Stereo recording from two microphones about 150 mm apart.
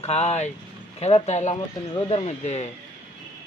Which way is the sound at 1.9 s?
40° left (ahead or behind).